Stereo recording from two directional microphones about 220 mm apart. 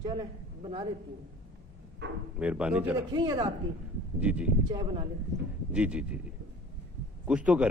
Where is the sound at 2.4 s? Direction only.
5° right (ahead or behind).